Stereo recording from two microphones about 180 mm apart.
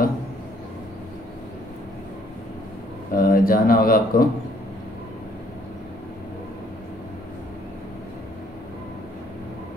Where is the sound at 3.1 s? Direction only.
50° left (ahead or behind).